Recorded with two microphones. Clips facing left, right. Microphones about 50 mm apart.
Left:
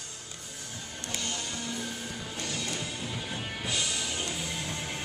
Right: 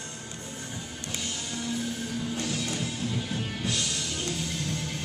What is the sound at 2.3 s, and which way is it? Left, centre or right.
Music, centre.